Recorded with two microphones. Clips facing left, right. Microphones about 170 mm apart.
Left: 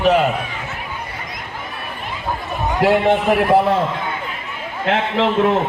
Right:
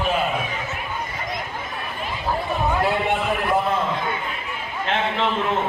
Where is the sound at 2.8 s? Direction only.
85° left.